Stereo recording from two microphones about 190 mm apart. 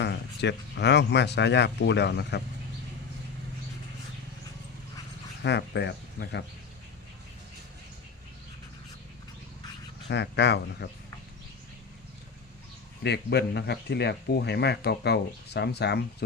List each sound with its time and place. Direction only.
0.0 s speech: 65° left (ahead or behind)
5.4 s speech: 65° left (ahead or behind)
10.1 s speech: 65° left (ahead or behind)
13.0 s speech: 60° left (ahead or behind)